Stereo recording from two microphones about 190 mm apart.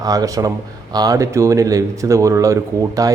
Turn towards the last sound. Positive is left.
turn(degrees=-15)  # may be behind; listen again after turning